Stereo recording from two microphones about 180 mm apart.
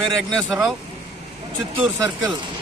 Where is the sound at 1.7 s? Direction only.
15° right (ahead or behind).